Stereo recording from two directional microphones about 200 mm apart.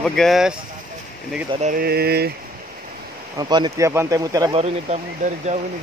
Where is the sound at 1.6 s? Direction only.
45° right (ahead or behind).